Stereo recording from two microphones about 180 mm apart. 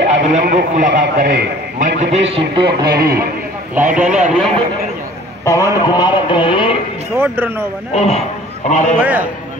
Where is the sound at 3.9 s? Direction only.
5° right (ahead or behind).